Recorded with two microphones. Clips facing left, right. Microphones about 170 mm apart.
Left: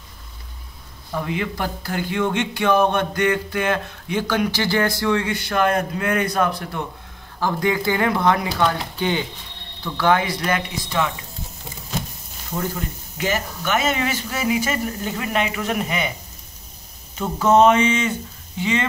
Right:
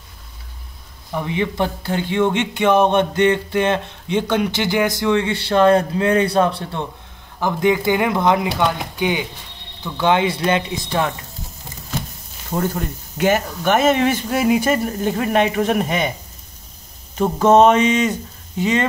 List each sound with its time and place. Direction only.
1.1 s speech: 20° right (ahead or behind)
9.9 s speech: 25° right (ahead or behind)
12.5 s speech: 60° right (ahead or behind); by 16.1 s 45° right (ahead or behind)
17.2 s speech: 25° right (ahead or behind)
17.6 s speech: 40° right (ahead or behind)